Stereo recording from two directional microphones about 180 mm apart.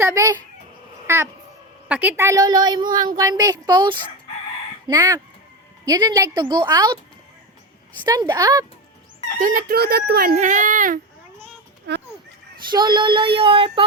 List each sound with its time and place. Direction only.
0.0 s speech: 15° right (ahead or behind)
1.0 s cat: 15° right (ahead or behind)
1.9 s a woman's voice: 10° right (ahead or behind)
8.0 s a woman's voice: 20° right (ahead or behind)
9.4 s speech: 50° right (ahead or behind)
11.9 s a sound: 65° right (ahead or behind)
12.7 s a woman's voice: 25° right (ahead or behind)